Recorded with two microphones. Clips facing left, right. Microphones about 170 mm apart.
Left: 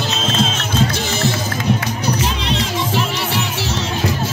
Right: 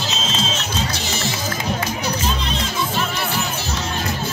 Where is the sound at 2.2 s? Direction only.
90° left.